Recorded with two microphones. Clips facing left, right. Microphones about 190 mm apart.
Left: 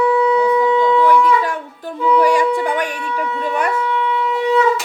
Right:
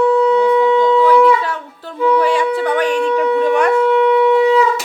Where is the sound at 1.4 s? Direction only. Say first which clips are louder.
Left 1 dB; 15° left (ahead or behind).